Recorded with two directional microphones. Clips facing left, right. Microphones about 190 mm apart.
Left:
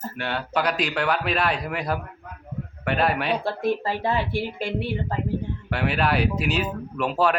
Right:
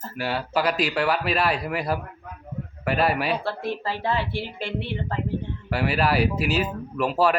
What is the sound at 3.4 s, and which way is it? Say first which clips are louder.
Speech: left 4 dB; 15° left (ahead or behind).